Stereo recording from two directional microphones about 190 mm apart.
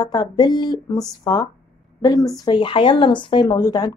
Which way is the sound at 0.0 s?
20° left (ahead or behind).